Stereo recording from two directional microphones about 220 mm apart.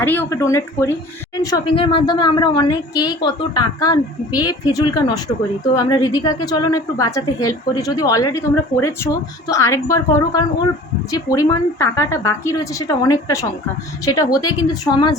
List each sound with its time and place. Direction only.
0.0 s a woman's voice: 10° left (ahead or behind)